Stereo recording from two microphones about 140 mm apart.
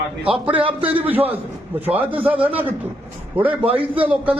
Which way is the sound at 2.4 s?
40° right (ahead or behind).